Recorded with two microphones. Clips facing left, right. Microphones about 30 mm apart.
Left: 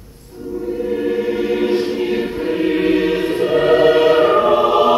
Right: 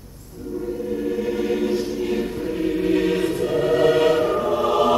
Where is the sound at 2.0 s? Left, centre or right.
Left.